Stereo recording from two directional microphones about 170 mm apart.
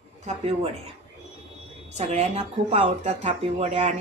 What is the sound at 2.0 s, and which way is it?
Speech, 40° right (ahead or behind).